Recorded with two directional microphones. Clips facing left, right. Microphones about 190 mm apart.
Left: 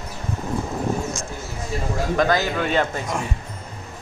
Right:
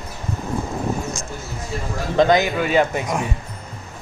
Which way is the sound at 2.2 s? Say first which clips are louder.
Right 6 dB; 20° right (ahead or behind).